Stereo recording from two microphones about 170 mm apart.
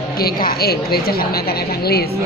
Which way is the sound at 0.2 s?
60° left (ahead or behind).